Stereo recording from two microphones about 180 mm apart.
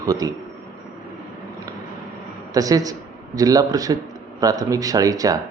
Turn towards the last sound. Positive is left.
turn(degrees=-20)  # may be behind; listen again after turning